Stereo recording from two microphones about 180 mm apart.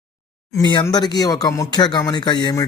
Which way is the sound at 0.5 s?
25° left (ahead or behind).